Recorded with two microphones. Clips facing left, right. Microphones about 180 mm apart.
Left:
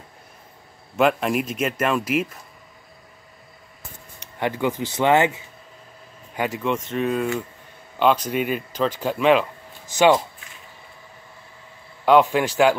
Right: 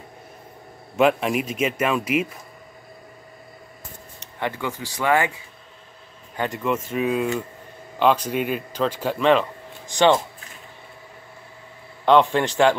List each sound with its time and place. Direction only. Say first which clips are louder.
0.9 s a man's voice: right 1 dB; centre (ahead or behind)
4.2 s speech: left 4 dB; 15° left (ahead or behind)
6.3 s speech: left 1 dB; 10° left (ahead or behind)
6.6 s a man's voice: right 2 dB; 5° right (ahead or behind)
12.0 s a man's voice: left 1 dB; 5° left (ahead or behind)